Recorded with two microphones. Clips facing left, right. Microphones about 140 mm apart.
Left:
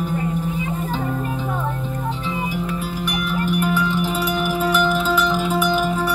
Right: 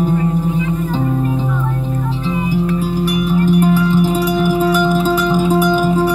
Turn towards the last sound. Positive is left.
turn(degrees=-40)  # may be behind; listen again after turning